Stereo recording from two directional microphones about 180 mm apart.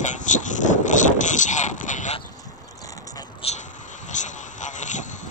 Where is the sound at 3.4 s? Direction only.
35° left (ahead or behind).